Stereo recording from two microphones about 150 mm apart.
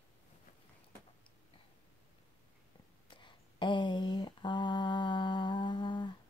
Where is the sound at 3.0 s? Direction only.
30° left (ahead or behind).